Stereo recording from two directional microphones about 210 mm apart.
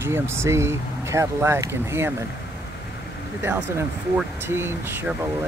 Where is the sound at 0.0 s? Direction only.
10° right (ahead or behind).